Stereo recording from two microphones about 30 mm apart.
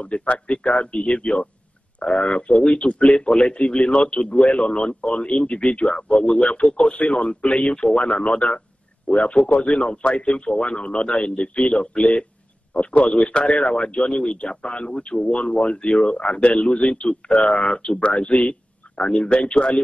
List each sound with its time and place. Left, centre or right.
0.0 s a man's voice: left
2.0 s a man's voice: left
3.1 s a man's voice: left
6.7 s a man's voice: left
12.0 s speech: left
13.3 s a man's voice: left
14.6 s a man's voice: left
17.5 s speech: left
17.9 s speech: left
18.4 s a sound: left
19.2 s a man's voice: left